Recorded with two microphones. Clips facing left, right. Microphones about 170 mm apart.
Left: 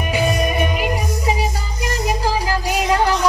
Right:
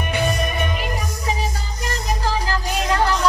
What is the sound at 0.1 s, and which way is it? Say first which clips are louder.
Music: left 4 dB; 10° left (ahead or behind).